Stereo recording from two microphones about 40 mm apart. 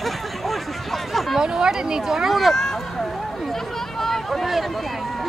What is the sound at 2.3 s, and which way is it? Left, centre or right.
Speech, centre.